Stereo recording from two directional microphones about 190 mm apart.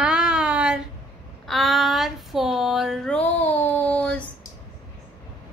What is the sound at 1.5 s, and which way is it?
Child singing, centre (ahead or behind).